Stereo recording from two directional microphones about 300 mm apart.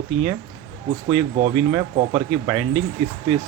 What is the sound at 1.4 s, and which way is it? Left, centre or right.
Speech, centre.